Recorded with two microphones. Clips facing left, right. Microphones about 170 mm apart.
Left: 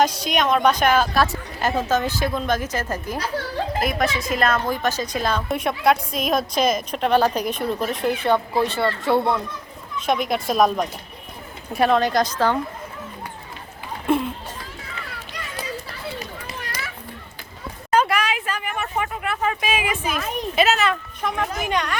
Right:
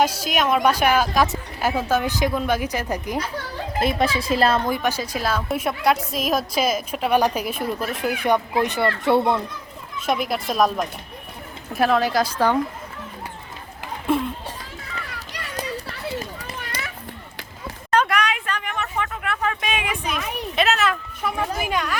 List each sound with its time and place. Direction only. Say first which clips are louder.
0.0 s a woman's voice: left 1 dB; 5° right (ahead or behind)
3.8 s a woman's voice: right 3 dB; 30° right (ahead or behind)
4.7 s a woman's voice: even; 10° right (ahead or behind)
10.1 s a woman's voice: left 2 dB; 5° right (ahead or behind)
14.1 s a sound: left 1 dB; centre (ahead or behind)
17.9 s a sound: left 1 dB; 5° left (ahead or behind)
21.6 s a woman's voice: left 1 dB; 5° right (ahead or behind)